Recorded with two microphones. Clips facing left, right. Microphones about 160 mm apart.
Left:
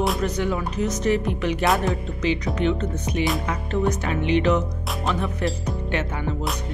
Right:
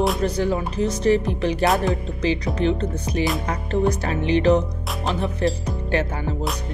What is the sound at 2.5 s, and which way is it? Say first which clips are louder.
Speech: right 1 dB; 35° right (ahead or behind).